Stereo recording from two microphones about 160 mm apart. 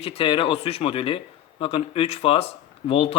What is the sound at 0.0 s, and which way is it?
A man's voice, 35° left (ahead or behind).